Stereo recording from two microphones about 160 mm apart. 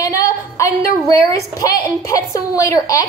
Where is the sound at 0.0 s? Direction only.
20° left (ahead or behind).